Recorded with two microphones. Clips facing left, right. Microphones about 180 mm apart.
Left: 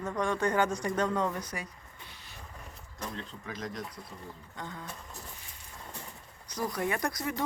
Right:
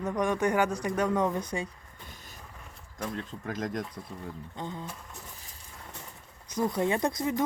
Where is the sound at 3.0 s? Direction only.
50° right (ahead or behind).